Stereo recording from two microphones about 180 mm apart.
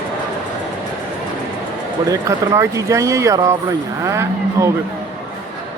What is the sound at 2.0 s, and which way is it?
Speech, 20° right (ahead or behind).